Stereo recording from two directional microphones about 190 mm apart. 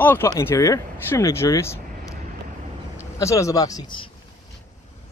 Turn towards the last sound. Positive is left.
turn(degrees=25)  # may be behind; listen again after turning